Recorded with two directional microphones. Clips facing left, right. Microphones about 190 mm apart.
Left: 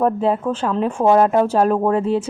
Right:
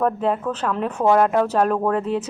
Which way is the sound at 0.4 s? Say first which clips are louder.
Left 4 dB; 25° left (ahead or behind).